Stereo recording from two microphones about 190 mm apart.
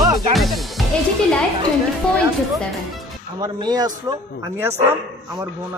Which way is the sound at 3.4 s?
20° right (ahead or behind).